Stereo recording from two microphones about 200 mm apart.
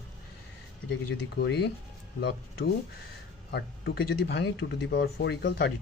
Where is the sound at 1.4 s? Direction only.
55° left (ahead or behind).